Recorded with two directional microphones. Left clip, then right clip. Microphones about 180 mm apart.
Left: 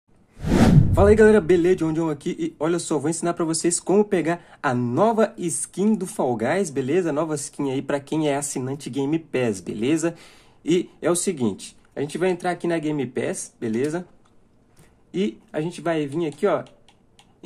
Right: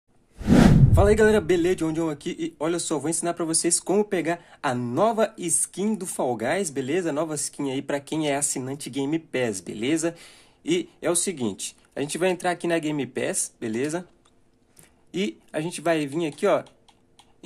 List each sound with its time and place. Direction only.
0.9 s a man's voice: 5° right (ahead or behind)
15.0 s speech: 15° right (ahead or behind)